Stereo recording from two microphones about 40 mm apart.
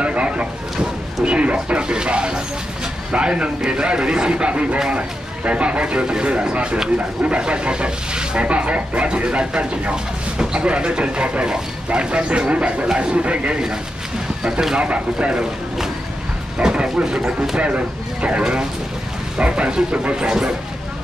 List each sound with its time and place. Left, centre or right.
0.0 s a sound: right
3.1 s speech: right
14.4 s speech: centre
14.8 s speech: right
16.5 s vehicle: right
17.6 s speech: right
18.4 s speech: centre